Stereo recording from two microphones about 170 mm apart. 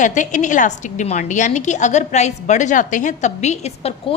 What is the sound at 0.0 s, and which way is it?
A woman's voice, 45° left (ahead or behind).